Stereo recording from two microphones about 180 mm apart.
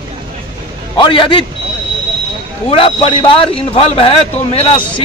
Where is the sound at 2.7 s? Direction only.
30° left (ahead or behind).